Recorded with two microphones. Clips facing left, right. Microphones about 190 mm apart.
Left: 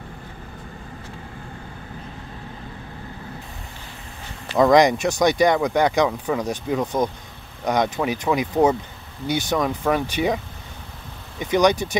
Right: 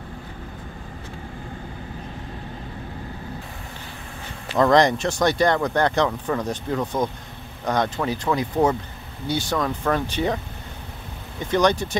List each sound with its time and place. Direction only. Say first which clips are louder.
4.6 s speech: left 2 dB; 10° left (ahead or behind)